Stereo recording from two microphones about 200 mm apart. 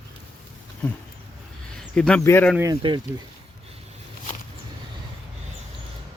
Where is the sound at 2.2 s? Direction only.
10° left (ahead or behind).